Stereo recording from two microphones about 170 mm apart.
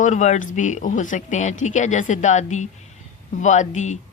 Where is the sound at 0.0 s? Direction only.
45° left (ahead or behind).